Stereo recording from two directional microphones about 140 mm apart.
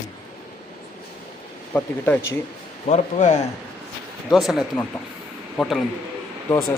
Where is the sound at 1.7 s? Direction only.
10° left (ahead or behind).